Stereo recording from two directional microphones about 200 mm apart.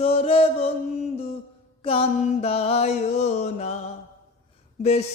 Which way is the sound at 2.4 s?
30° left (ahead or behind).